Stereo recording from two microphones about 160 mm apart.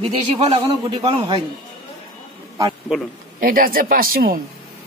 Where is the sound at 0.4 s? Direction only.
30° right (ahead or behind).